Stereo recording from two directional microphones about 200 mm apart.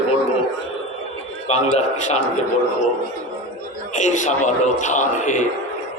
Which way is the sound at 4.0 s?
35° left (ahead or behind).